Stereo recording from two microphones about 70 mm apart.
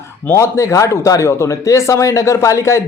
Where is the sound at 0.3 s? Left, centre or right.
Left.